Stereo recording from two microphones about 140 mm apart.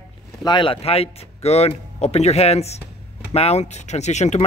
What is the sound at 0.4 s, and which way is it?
Speech, 35° left (ahead or behind).